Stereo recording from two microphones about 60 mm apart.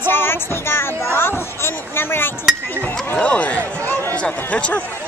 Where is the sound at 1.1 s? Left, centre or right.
Left.